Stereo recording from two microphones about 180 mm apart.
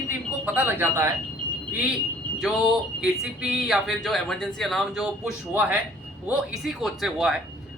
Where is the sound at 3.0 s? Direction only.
Centre (ahead or behind).